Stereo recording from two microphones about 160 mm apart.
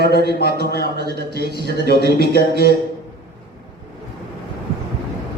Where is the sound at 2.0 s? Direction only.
75° left (ahead or behind).